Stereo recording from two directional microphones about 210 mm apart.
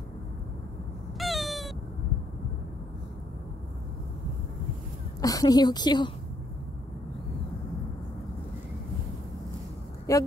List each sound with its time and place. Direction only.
1.1 s cat: centre (ahead or behind)
5.2 s a woman's voice: 15° left (ahead or behind)
10.1 s a sound: 15° left (ahead or behind)